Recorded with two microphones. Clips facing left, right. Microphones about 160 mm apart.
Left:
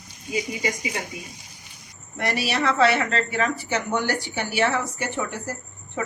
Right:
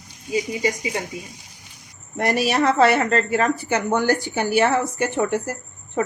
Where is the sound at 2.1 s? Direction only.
45° right (ahead or behind).